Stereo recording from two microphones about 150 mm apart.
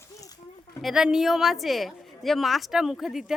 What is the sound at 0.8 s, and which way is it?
A woman's voice, 5° right (ahead or behind).